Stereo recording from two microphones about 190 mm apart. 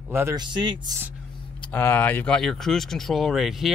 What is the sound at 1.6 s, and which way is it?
Speech, 10° left (ahead or behind).